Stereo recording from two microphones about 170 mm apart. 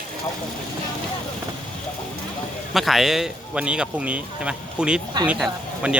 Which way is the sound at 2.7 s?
Centre (ahead or behind).